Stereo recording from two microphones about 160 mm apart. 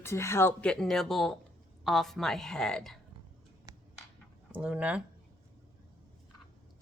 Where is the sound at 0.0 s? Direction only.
15° left (ahead or behind).